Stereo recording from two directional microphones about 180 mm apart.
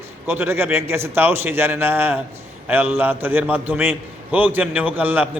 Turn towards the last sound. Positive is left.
turn(degrees=-10)  # may be behind; listen again after turning